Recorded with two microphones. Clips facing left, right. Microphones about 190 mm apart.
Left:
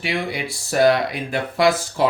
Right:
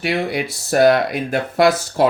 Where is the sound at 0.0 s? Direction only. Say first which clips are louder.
Right 4 dB; 45° right (ahead or behind).